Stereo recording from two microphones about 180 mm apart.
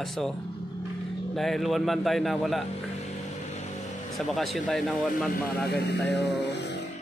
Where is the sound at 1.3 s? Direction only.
Centre (ahead or behind).